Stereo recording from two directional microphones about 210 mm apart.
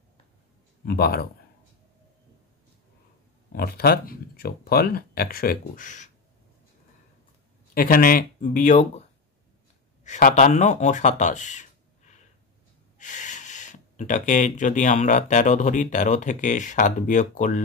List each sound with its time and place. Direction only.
0.8 s speech: 45° left (ahead or behind)
3.5 s speech: 45° left (ahead or behind)
7.7 s speech: 45° left (ahead or behind)
10.0 s speech: 35° left (ahead or behind)